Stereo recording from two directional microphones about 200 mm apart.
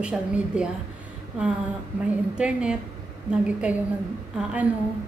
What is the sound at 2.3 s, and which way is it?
Speech, 5° right (ahead or behind).